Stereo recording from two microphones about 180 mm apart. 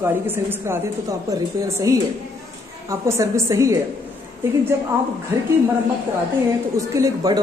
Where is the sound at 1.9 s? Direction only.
15° right (ahead or behind).